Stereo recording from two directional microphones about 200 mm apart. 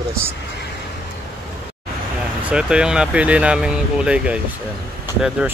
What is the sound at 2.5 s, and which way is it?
Speech, 5° right (ahead or behind).